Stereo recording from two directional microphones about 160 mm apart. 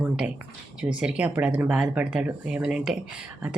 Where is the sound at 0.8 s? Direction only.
5° right (ahead or behind).